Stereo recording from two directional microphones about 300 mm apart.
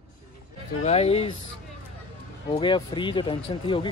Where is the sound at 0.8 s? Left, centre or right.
Left.